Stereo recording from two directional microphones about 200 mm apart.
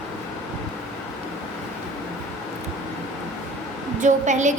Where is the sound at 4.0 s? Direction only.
35° right (ahead or behind).